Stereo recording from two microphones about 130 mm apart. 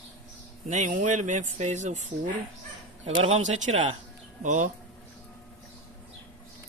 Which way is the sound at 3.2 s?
65° right (ahead or behind).